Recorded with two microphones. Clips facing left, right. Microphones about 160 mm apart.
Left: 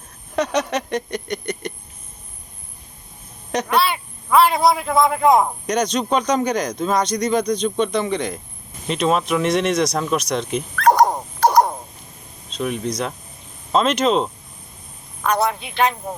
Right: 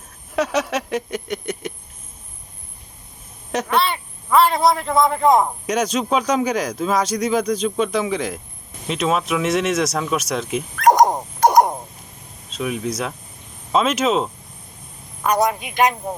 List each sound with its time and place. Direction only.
0.3 s a sound: 5° right (ahead or behind)
3.5 s a man's voice: centre (ahead or behind)
10.8 s dog: 15° right (ahead or behind)
12.5 s a man's voice: 5° right (ahead or behind)